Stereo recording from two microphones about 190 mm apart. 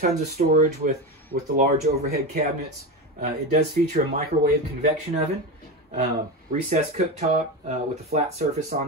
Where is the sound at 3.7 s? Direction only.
55° right (ahead or behind).